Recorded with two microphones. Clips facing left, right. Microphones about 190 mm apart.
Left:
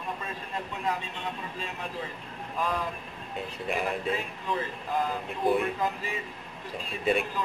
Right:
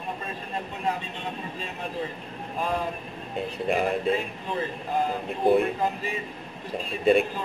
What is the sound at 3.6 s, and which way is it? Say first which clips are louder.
Speech: right 6 dB; 45° right (ahead or behind).